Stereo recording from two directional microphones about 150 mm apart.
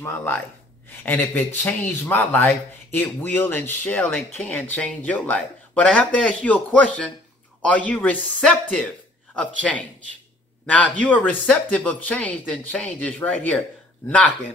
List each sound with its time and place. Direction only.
0.0 s speech: 10° left (ahead or behind)